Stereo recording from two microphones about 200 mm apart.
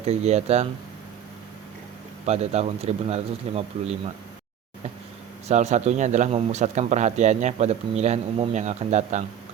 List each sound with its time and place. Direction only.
0.0 s a man's voice: 30° right (ahead or behind)
2.2 s a man's voice: 35° right (ahead or behind)
5.5 s a man's voice: 35° right (ahead or behind)